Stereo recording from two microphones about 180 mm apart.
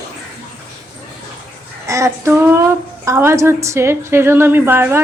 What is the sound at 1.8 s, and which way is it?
A woman's voice, 15° right (ahead or behind).